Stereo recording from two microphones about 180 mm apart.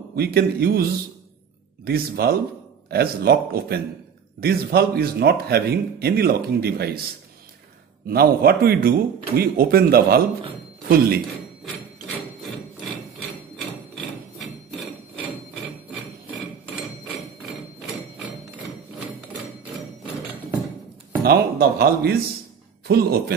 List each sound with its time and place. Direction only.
0.1 s a man's voice: 60° right (ahead or behind)
8.1 s a man's voice: 55° right (ahead or behind)
13.6 s hammer: centre (ahead or behind)
21.2 s a man's voice: 60° right (ahead or behind)